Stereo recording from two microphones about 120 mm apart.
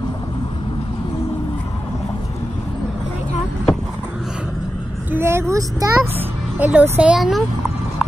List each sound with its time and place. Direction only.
5.1 s speech: 20° right (ahead or behind)
6.1 s speech: 15° right (ahead or behind)